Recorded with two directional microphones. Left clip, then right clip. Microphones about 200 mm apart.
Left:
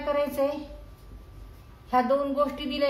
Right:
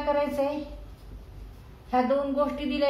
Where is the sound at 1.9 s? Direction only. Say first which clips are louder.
Left 1 dB; 45° left (ahead or behind).